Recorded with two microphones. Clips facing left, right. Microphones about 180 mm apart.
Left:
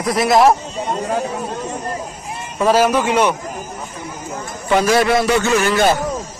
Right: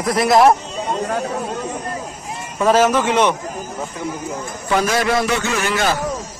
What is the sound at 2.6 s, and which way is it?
Speech, 10° left (ahead or behind).